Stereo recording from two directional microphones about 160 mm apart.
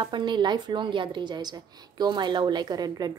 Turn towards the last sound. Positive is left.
turn(degrees=-25)  # may be behind; listen again after turning